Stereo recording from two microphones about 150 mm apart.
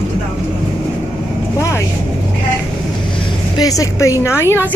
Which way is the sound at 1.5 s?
20° left (ahead or behind).